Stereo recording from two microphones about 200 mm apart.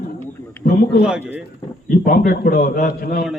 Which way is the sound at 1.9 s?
45° left (ahead or behind).